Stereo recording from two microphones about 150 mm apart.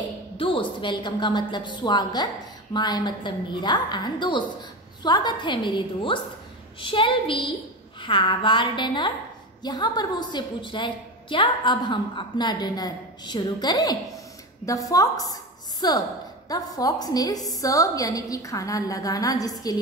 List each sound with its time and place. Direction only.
0.4 s a woman's voice: 35° left (ahead or behind)